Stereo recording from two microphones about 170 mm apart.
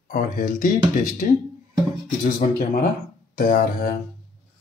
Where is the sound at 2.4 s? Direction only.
55° left (ahead or behind).